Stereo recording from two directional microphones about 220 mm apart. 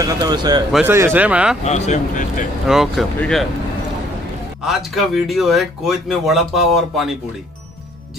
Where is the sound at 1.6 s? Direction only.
30° left (ahead or behind).